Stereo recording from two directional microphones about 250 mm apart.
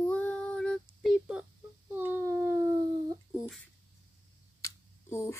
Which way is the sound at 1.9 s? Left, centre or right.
Centre.